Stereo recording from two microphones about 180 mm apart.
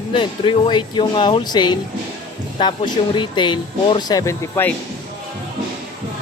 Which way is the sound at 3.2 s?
25° left (ahead or behind).